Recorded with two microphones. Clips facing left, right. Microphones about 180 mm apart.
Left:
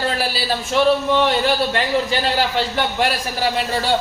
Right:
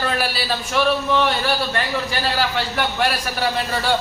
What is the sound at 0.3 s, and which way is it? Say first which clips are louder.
A man's voice: left 3 dB; 25° left (ahead or behind).